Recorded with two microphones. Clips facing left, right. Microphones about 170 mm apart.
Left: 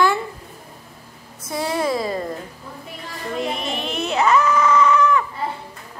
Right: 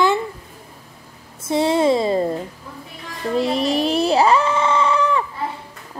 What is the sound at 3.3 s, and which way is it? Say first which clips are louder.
Baby cry: right 7 dB; 35° right (ahead or behind).